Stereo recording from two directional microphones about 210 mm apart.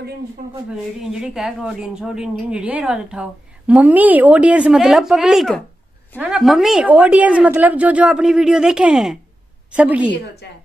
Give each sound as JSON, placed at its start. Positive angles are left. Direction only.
{"t": 1.1, "sound": "a woman's voice", "side_deg": 0}
{"t": 10.4, "sound": "speech", "side_deg": 50}